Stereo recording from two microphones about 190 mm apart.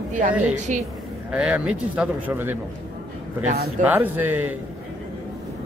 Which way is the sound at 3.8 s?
10° right (ahead or behind).